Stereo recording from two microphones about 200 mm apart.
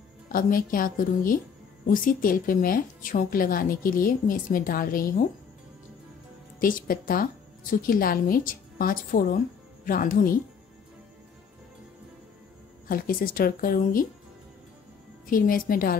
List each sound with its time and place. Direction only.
0.3 s a woman's voice: 45° left (ahead or behind)
6.6 s a woman's voice: 45° left (ahead or behind)
12.8 s a woman's voice: 45° left (ahead or behind)
15.2 s a woman's voice: 45° left (ahead or behind)